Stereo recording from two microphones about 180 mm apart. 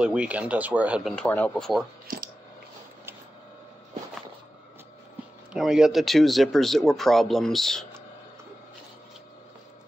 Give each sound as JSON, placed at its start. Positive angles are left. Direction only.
{"t": 0.0, "sound": "speech", "side_deg": -5}
{"t": 1.1, "sound": "speech", "side_deg": 10}
{"t": 2.1, "sound": "a sound", "side_deg": -50}
{"t": 5.5, "sound": "speech", "side_deg": -5}